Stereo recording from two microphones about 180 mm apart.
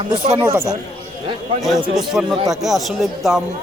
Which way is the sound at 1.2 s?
30° right (ahead or behind).